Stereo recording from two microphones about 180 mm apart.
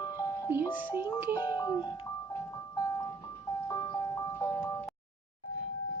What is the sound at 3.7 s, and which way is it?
Ice cream truck, 20° left (ahead or behind).